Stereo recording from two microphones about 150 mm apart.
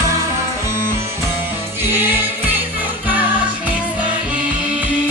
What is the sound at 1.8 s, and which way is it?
Music, 15° right (ahead or behind).